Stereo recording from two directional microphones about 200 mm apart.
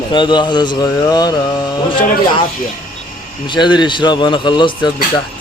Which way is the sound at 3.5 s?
20° left (ahead or behind).